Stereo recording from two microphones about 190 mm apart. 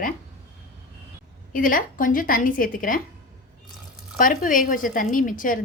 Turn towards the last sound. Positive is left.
turn(degrees=45)  # may be behind; listen again after turning